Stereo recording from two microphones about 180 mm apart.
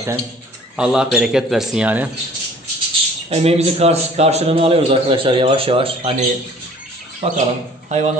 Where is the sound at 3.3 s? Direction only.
35° right (ahead or behind).